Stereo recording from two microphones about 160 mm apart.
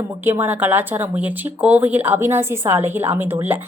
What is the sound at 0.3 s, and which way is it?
Speech, 10° right (ahead or behind).